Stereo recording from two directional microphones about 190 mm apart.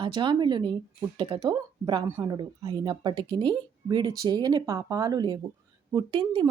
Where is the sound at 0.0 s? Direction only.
25° right (ahead or behind).